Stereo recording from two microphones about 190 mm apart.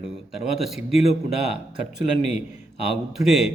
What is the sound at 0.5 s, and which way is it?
Speech, centre (ahead or behind).